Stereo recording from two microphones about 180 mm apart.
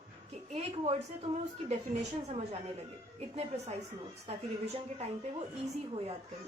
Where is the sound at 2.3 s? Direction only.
35° right (ahead or behind).